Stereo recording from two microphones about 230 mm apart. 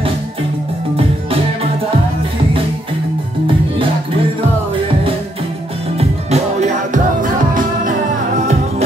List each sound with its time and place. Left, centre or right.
5.9 s music: right